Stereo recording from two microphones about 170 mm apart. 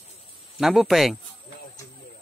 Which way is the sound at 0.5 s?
Centre (ahead or behind).